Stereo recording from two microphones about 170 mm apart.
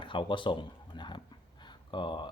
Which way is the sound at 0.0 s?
30° left (ahead or behind).